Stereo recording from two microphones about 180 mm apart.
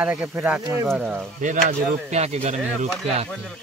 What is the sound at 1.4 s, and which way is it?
Speech, 45° right (ahead or behind).